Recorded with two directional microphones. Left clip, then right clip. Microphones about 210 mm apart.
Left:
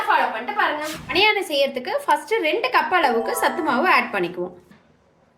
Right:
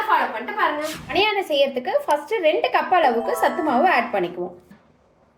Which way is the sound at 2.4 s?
90° left.